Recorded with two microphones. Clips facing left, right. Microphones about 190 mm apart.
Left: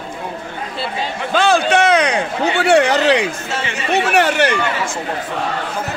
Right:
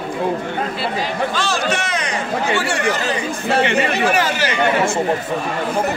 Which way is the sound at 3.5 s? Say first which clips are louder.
Right 8 dB; 60° right (ahead or behind).